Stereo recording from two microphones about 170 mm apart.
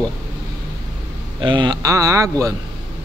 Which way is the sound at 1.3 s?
30° right (ahead or behind).